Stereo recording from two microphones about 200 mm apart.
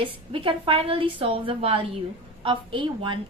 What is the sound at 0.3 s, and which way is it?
A woman's voice, 25° right (ahead or behind).